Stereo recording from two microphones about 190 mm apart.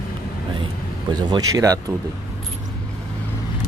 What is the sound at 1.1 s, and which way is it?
Speech, 20° right (ahead or behind).